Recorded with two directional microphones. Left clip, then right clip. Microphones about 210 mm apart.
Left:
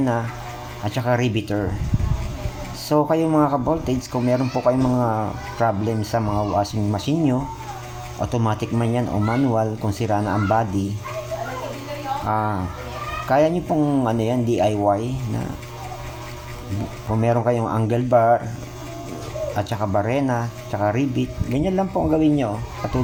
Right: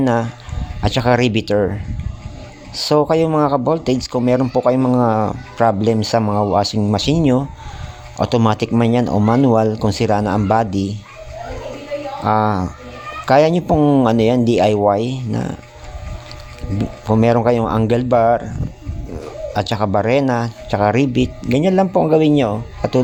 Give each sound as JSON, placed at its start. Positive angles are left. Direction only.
{"t": 0.0, "sound": "speech", "side_deg": -45}
{"t": 2.7, "sound": "speech", "side_deg": -45}
{"t": 12.2, "sound": "speech", "side_deg": -45}
{"t": 17.1, "sound": "speech", "side_deg": -45}
{"t": 19.5, "sound": "speech", "side_deg": -45}